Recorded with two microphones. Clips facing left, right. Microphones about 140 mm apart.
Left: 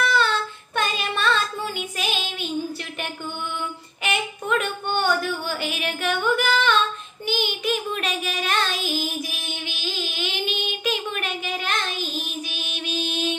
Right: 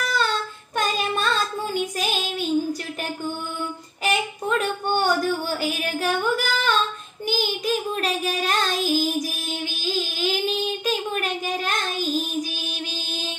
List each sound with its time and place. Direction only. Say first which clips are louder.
0.0 s child singing: left 3 dB; 35° right (ahead or behind)
0.7 s female singing: right 2 dB; 40° right (ahead or behind)
2.0 s child singing: right 3 dB; 40° right (ahead or behind)
4.0 s female singing: right 3 dB; 35° right (ahead or behind)
7.2 s child singing: right 1 dB; 35° right (ahead or behind)
12.8 s music: left 5 dB; 35° right (ahead or behind)